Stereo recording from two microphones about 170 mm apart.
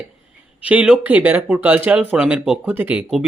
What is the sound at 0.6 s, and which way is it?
Speech, 10° right (ahead or behind).